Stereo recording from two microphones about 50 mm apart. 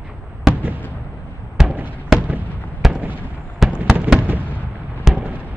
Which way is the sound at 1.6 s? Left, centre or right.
Centre.